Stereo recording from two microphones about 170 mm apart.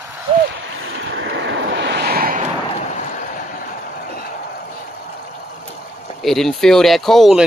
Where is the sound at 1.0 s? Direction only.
90° right; by 2.4 s 60° right (ahead or behind).